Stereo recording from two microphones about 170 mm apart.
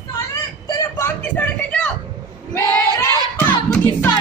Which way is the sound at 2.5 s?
20° right (ahead or behind).